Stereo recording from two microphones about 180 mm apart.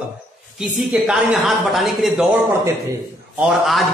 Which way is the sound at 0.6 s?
5° right (ahead or behind).